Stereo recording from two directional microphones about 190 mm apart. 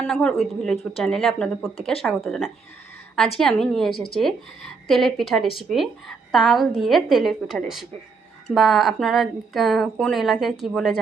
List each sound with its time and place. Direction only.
0.0 s speech: 5° left (ahead or behind)